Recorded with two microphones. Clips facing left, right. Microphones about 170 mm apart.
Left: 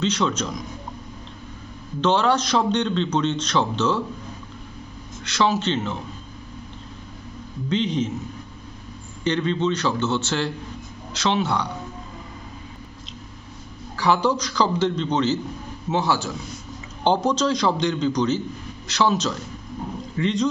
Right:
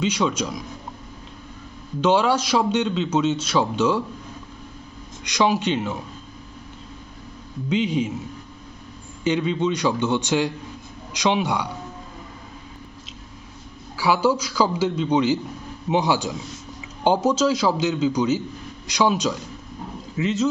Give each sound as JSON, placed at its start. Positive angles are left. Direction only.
{"t": 0.0, "sound": "a man's voice", "side_deg": -10}
{"t": 2.0, "sound": "a man's voice", "side_deg": -10}
{"t": 5.2, "sound": "a man's voice", "side_deg": -15}
{"t": 7.7, "sound": "a man's voice", "side_deg": -10}
{"t": 9.2, "sound": "a man's voice", "side_deg": -10}
{"t": 13.9, "sound": "a man's voice", "side_deg": -10}